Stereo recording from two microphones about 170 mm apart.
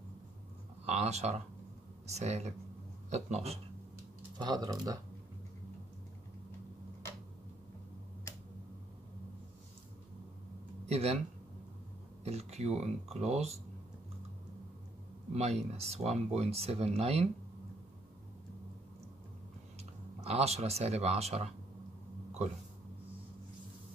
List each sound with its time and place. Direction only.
0.8 s speech: 40° right (ahead or behind)
4.4 s speech: 25° right (ahead or behind)
10.9 s speech: 40° right (ahead or behind)
12.3 s speech: 40° right (ahead or behind)
15.3 s speech: 40° right (ahead or behind)
19.8 s speech: 40° right (ahead or behind)